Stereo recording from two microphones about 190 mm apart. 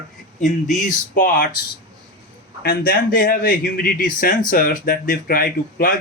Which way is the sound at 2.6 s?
50° left (ahead or behind).